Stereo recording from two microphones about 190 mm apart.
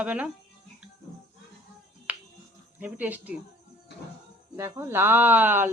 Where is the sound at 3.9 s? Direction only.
65° left (ahead or behind).